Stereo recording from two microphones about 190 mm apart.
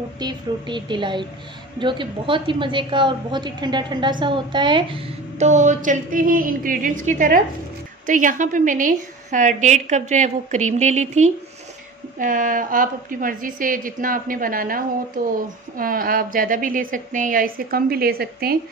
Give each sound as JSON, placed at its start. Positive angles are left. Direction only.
{"t": 0.2, "sound": "a woman's voice", "side_deg": -25}